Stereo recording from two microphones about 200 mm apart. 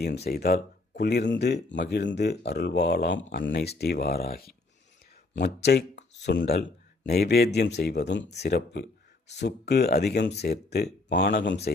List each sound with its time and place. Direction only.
0.3 s speech: 50° left (ahead or behind)
5.6 s speech: 60° left (ahead or behind)